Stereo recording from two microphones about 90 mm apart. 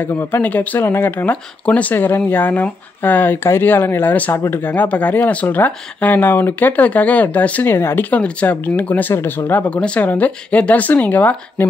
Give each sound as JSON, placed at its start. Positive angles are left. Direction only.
{"t": 0.0, "sound": "speech", "side_deg": 25}
{"t": 9.7, "sound": "speech", "side_deg": 10}